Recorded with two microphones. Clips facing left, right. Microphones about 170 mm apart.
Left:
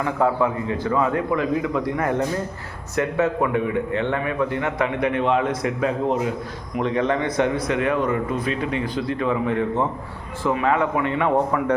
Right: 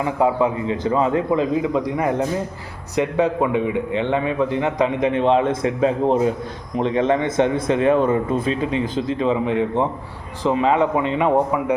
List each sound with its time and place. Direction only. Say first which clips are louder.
0.0 s a man's voice: right 2 dB; 15° right (ahead or behind)